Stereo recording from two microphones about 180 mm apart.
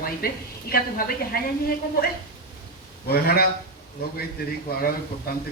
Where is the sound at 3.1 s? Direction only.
60° left (ahead or behind).